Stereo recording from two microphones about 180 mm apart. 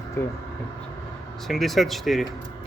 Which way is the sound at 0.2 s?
15° left (ahead or behind).